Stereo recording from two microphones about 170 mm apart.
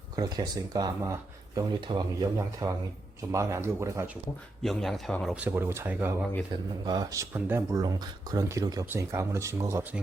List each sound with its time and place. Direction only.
0.2 s speech: 20° right (ahead or behind)
4.6 s a man's voice: centre (ahead or behind)
5.3 s speech: 10° right (ahead or behind)
6.5 s speech: 30° right (ahead or behind); by 10.0 s 15° right (ahead or behind)